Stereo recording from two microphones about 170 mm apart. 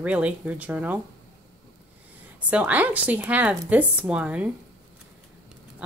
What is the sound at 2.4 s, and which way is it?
A woman's voice, 10° right (ahead or behind).